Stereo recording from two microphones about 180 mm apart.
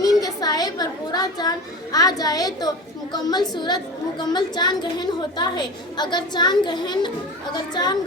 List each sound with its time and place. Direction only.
0.0 s a woman's voice: 20° left (ahead or behind)